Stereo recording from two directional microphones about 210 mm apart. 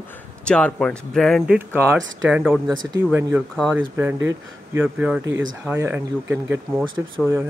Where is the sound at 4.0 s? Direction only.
10° right (ahead or behind).